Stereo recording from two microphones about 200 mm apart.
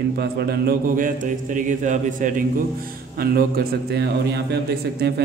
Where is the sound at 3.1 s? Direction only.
50° right (ahead or behind).